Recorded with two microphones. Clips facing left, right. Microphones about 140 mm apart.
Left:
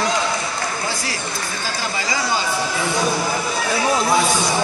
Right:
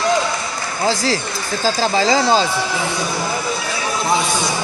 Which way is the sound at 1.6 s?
90° right.